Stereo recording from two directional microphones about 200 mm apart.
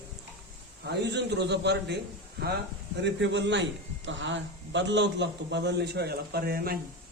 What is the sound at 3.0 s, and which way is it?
A man's voice, 65° right (ahead or behind).